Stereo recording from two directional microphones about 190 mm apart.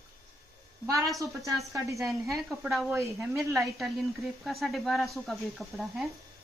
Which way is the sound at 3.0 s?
15° right (ahead or behind).